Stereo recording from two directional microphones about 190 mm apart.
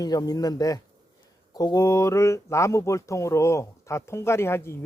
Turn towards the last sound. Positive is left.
turn(degrees=15)  # may be behind; listen again after turning